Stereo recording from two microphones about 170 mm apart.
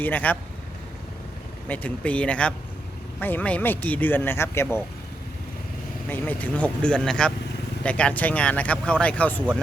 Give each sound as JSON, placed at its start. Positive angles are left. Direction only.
{"t": 0.0, "sound": "a man's voice", "side_deg": 10}
{"t": 1.6, "sound": "a man's voice", "side_deg": 10}
{"t": 6.1, "sound": "a man's voice", "side_deg": 10}